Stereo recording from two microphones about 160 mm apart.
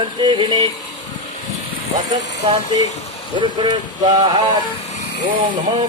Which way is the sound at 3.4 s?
30° right (ahead or behind).